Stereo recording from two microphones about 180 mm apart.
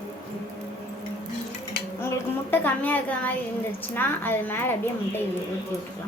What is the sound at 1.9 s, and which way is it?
A woman's voice, 10° left (ahead or behind).